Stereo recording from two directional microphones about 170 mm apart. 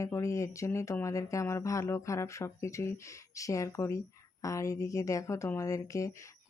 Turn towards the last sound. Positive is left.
turn(degrees=20)  # may be behind; listen again after turning